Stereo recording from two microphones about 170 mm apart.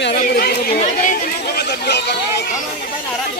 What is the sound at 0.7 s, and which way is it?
Chatter, 45° left (ahead or behind).